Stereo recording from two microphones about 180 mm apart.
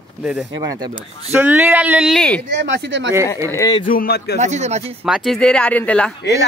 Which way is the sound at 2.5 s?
80° right.